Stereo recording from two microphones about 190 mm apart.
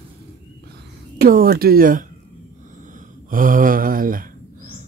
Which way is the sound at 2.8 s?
45° right (ahead or behind).